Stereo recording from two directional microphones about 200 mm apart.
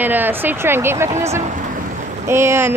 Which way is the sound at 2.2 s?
15° right (ahead or behind).